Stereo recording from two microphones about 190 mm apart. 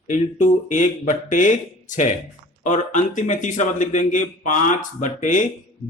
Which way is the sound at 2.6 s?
40° left (ahead or behind).